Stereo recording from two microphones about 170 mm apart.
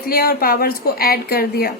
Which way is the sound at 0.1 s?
60° left (ahead or behind).